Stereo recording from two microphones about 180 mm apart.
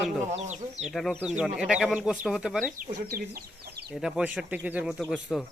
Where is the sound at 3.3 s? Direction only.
60° right (ahead or behind).